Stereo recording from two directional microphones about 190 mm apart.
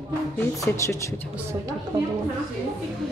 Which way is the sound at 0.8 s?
15° left (ahead or behind).